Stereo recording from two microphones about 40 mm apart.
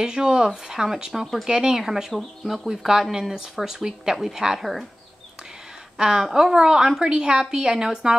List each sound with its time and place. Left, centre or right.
0.0 s a woman's voice: centre
1.2 s speech: centre
1.5 s a woman's voice: centre
1.9 s speech: centre
2.9 s a woman's voice: centre
5.9 s a woman's voice: centre